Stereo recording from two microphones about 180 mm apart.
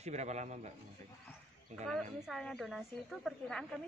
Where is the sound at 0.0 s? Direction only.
40° right (ahead or behind).